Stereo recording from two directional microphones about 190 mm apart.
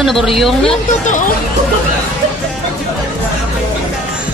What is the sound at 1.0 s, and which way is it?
Speech, 40° left (ahead or behind).